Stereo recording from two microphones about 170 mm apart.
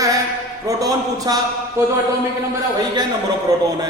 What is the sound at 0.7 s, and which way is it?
Speech, 20° right (ahead or behind).